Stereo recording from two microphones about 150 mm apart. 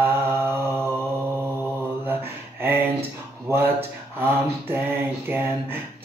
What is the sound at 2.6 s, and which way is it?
Mantra, 15° right (ahead or behind).